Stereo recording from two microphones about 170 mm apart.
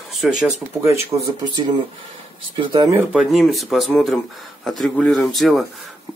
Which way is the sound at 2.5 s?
25° right (ahead or behind).